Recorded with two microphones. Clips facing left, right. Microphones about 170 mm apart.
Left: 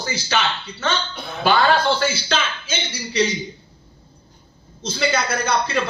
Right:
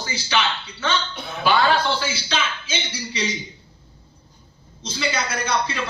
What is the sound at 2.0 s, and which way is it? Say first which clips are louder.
Speech: left 4 dB; 50° left (ahead or behind).